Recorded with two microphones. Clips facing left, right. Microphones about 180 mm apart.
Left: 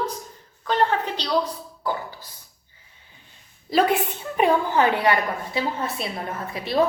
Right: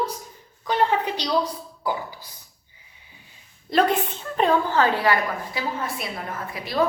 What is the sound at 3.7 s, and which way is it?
A woman's voice, 5° left (ahead or behind).